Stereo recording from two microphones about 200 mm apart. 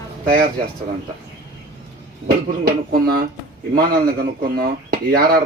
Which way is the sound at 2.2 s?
50° right (ahead or behind).